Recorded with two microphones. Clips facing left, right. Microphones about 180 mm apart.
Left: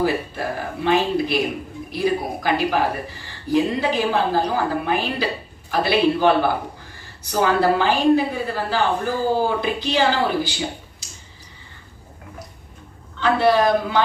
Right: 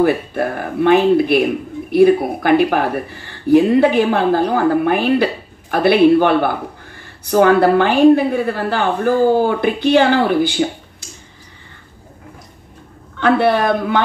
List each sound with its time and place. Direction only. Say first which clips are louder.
0.0 s speech: right 7 dB; 55° right (ahead or behind)
13.2 s speech: right 3 dB; 55° right (ahead or behind)